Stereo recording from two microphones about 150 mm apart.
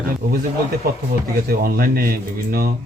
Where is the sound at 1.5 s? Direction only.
85° right.